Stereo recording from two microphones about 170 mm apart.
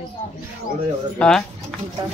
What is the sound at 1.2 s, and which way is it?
Speech, 5° left (ahead or behind).